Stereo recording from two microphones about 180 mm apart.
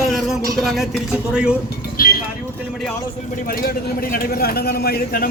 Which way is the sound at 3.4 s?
55° left (ahead or behind).